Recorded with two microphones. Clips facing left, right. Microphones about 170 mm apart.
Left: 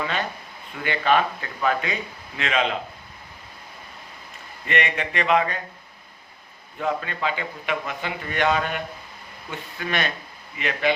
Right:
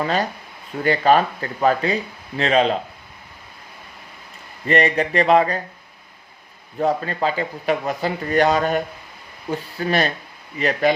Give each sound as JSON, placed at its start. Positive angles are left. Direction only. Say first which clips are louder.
{"t": 0.0, "sound": "speech", "louder": "right 6 dB", "side_deg": -40}
{"t": 4.6, "sound": "speech", "louder": "right 7 dB", "side_deg": -35}
{"t": 6.7, "sound": "speech", "louder": "right 6 dB", "side_deg": -35}